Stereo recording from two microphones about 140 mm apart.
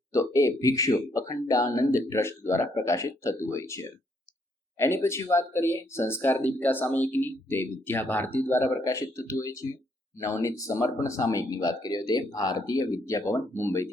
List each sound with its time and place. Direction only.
0.1 s speech: 20° left (ahead or behind)